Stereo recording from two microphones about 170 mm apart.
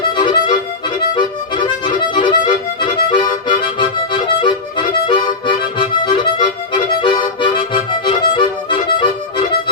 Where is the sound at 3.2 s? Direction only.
25° left (ahead or behind).